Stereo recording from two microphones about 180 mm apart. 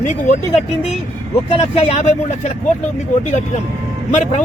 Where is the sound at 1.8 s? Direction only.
35° left (ahead or behind).